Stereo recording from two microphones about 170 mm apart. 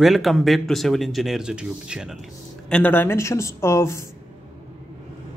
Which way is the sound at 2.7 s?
10° left (ahead or behind).